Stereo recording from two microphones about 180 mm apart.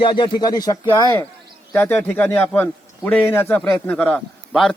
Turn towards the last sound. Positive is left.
turn(degrees=5)  # may be behind; listen again after turning